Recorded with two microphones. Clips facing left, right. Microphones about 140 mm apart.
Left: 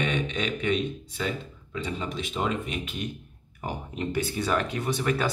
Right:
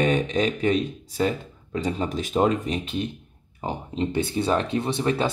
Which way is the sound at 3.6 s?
25° right (ahead or behind).